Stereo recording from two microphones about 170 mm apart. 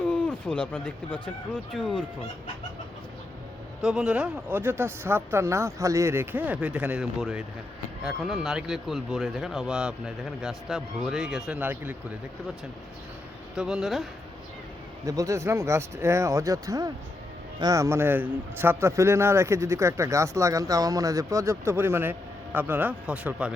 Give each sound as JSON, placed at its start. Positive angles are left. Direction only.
{"t": 0.0, "sound": "speech", "side_deg": 10}
{"t": 3.8, "sound": "speech", "side_deg": -5}
{"t": 13.6, "sound": "speech", "side_deg": 0}
{"t": 15.0, "sound": "speech", "side_deg": -20}